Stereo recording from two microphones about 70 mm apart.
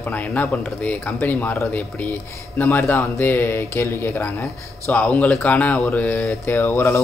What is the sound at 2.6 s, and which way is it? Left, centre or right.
Speech, left.